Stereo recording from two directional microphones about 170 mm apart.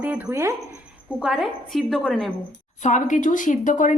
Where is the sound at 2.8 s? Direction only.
50° left (ahead or behind).